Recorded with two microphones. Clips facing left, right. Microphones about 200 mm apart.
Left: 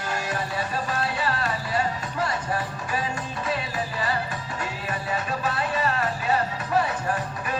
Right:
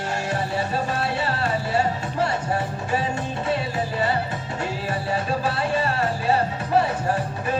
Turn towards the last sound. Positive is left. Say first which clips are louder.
# right 3 dB
turn(degrees=-30)  # may be behind; listen again after turning